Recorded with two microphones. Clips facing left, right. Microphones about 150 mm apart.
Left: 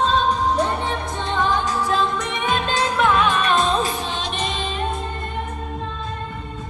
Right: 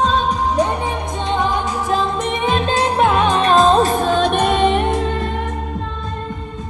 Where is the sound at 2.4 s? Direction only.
30° right (ahead or behind); by 4.9 s 70° right (ahead or behind).